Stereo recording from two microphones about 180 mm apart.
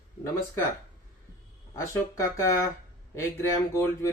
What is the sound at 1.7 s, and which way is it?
Speech, 15° left (ahead or behind).